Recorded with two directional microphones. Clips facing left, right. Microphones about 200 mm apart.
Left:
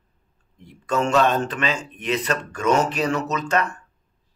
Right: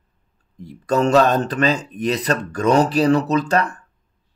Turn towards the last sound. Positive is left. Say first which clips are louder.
# right 5 dB
turn(degrees=-35)  # may be behind; listen again after turning